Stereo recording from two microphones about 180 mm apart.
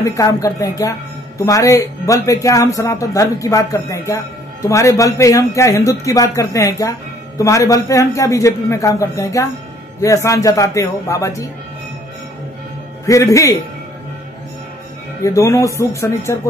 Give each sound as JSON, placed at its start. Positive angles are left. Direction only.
{"t": 0.0, "sound": "speech", "side_deg": 20}
{"t": 13.0, "sound": "speech", "side_deg": 15}
{"t": 15.2, "sound": "speech", "side_deg": 15}